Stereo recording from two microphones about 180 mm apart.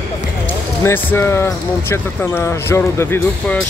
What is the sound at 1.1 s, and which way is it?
Speech, 15° left (ahead or behind).